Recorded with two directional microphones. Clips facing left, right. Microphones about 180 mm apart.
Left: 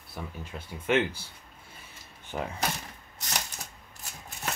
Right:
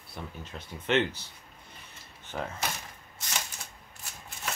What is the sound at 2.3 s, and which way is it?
Speech, 10° left (ahead or behind).